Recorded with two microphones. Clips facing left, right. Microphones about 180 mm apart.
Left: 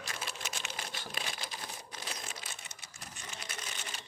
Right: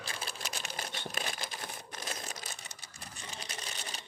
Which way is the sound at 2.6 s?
35° right (ahead or behind).